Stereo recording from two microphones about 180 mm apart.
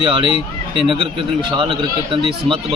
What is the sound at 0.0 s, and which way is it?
A man's voice, 25° right (ahead or behind).